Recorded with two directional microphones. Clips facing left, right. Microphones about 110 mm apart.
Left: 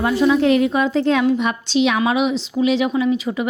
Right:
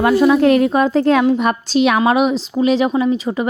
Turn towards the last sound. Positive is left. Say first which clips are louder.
# right 2 dB
turn(degrees=-40)  # may be behind; listen again after turning